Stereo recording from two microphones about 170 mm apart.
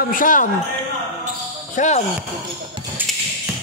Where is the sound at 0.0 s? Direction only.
55° left (ahead or behind).